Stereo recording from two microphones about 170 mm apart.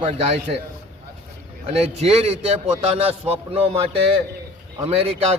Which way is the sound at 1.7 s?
35° right (ahead or behind).